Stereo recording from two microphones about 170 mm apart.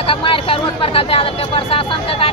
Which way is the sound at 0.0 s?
30° left (ahead or behind).